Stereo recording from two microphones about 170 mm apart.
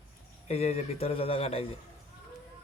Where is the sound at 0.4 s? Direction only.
35° left (ahead or behind).